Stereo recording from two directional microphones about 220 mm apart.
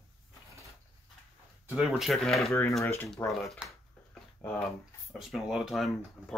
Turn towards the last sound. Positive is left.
turn(degrees=-5)  # may be behind; listen again after turning